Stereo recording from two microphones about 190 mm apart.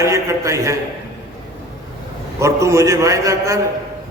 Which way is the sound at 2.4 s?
15° right (ahead or behind).